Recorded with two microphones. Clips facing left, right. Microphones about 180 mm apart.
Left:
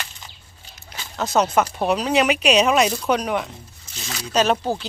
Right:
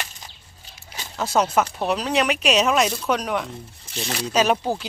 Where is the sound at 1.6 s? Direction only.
Centre (ahead or behind).